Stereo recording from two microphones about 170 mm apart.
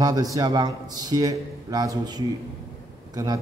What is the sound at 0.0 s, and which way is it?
A man's voice, 20° right (ahead or behind).